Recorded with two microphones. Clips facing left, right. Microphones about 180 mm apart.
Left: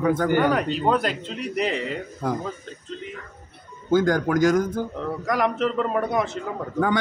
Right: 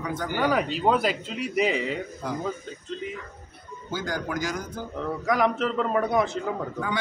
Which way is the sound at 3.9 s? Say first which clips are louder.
Left 11 dB; 50° left (ahead or behind).